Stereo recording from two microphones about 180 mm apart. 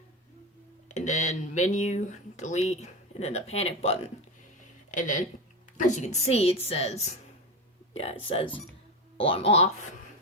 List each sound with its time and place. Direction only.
0.9 s speech: 40° left (ahead or behind)
8.4 s speech: 10° left (ahead or behind)
9.1 s speech: 30° left (ahead or behind)